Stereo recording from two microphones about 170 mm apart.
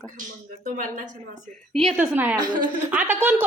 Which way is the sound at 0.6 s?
50° right (ahead or behind).